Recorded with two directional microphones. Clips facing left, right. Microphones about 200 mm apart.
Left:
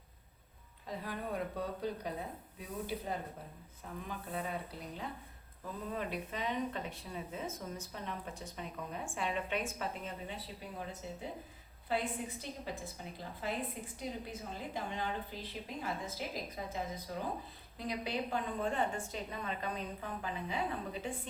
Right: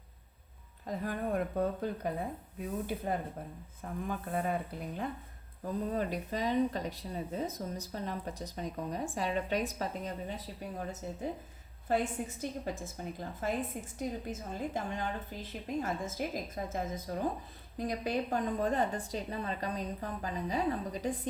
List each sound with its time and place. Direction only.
0.9 s a woman's voice: 50° right (ahead or behind)
5.6 s a woman's voice: 40° right (ahead or behind)